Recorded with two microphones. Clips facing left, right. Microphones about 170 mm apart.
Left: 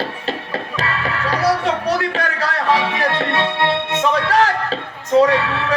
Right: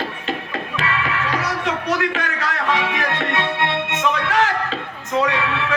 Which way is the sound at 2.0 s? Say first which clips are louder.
Left 2 dB; 35° left (ahead or behind).